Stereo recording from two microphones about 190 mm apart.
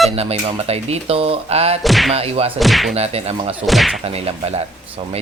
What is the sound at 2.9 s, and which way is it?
Speech, 30° right (ahead or behind).